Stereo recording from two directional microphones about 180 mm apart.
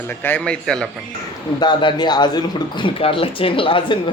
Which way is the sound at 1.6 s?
25° left (ahead or behind).